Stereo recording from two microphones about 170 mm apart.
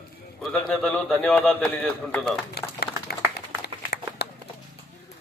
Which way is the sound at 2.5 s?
70° left (ahead or behind).